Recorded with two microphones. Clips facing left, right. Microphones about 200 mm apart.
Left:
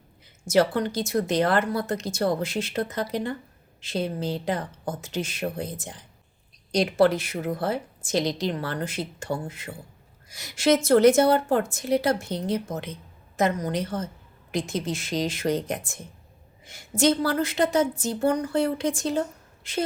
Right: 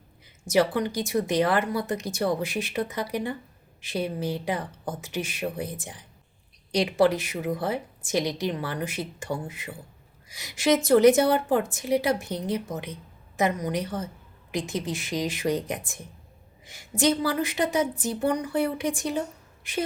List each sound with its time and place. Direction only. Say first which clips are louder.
0.4 s a woman's voice: left 1 dB; 15° right (ahead or behind)